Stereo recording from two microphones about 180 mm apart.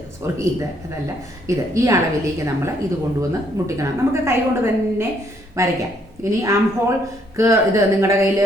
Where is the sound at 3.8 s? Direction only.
15° right (ahead or behind).